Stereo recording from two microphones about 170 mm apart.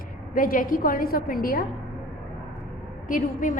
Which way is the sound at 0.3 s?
55° left (ahead or behind).